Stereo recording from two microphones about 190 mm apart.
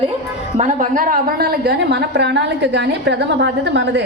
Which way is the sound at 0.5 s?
40° right (ahead or behind).